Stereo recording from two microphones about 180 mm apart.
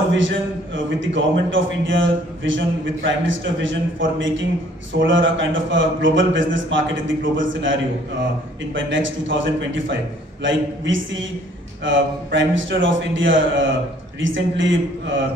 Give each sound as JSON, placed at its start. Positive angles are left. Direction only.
{"t": 0.1, "sound": "a man's voice", "side_deg": -90}